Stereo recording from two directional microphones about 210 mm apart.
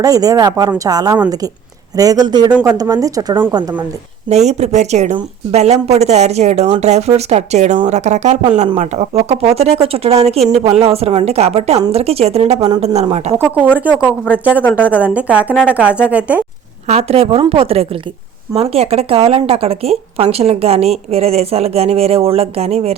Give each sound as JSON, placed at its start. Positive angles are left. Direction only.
{"t": 0.0, "sound": "speech", "side_deg": -15}
{"t": 4.3, "sound": "speech", "side_deg": -30}
{"t": 13.7, "sound": "speech", "side_deg": -5}
{"t": 14.6, "sound": "speech", "side_deg": 10}
{"t": 15.0, "sound": "speech", "side_deg": -5}
{"t": 16.8, "sound": "speech", "side_deg": -30}